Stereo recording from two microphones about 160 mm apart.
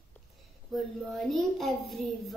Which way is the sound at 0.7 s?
Centre (ahead or behind).